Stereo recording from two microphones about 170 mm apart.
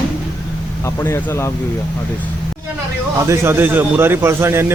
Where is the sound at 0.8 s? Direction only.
15° left (ahead or behind).